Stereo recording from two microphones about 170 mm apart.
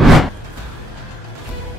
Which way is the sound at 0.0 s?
Centre (ahead or behind).